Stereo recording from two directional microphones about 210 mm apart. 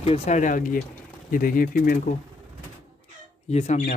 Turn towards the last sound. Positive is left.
turn(degrees=35)  # may be behind; listen again after turning